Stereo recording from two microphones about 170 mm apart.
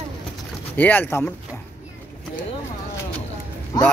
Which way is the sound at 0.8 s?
10° left (ahead or behind).